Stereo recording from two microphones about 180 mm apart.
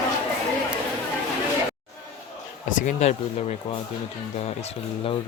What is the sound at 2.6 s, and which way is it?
Speech, 45° left (ahead or behind).